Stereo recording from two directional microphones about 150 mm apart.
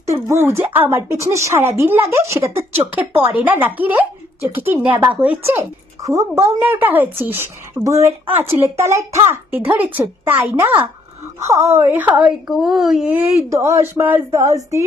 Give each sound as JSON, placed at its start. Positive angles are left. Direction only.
{"t": 0.0, "sound": "a woman's voice", "side_deg": -20}